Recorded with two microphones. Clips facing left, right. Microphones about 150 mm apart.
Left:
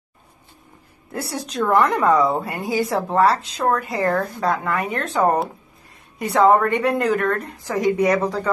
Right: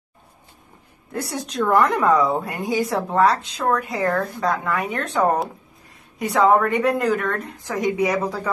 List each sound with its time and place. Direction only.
1.1 s a woman's voice: centre (ahead or behind)